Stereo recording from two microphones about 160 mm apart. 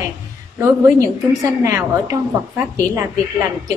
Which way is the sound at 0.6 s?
20° right (ahead or behind).